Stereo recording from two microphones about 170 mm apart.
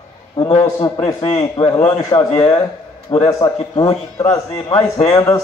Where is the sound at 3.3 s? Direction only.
20° left (ahead or behind).